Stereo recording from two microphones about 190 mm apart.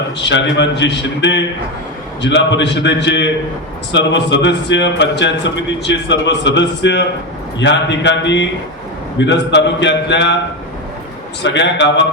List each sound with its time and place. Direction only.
0.2 s a man's voice: 70° left (ahead or behind)
11.4 s a man's voice: 70° left (ahead or behind)